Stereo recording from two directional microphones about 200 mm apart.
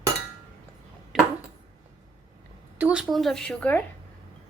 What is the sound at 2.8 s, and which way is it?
A woman's voice, 5° right (ahead or behind).